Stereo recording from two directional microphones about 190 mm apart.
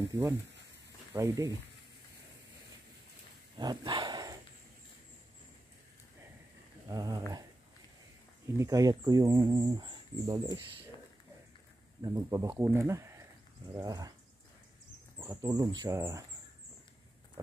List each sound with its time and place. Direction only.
0.1 s speech: 15° right (ahead or behind)
3.5 s dog: 25° right (ahead or behind)
6.9 s speech: 20° right (ahead or behind)
8.5 s speech: 20° right (ahead or behind)
12.0 s speech: 15° right (ahead or behind)
15.1 s speech: 20° right (ahead or behind)